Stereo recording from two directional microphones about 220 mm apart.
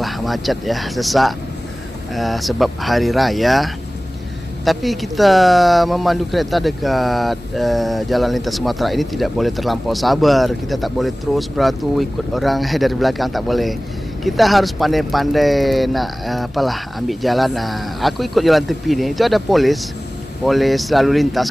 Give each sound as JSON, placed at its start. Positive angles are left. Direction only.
{"t": 0.0, "sound": "speech", "side_deg": 0}